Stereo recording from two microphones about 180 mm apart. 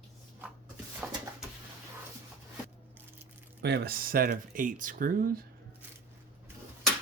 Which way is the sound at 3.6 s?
65° right (ahead or behind).